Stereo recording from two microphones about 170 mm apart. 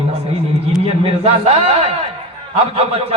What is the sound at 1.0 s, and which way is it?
Speech, 35° right (ahead or behind).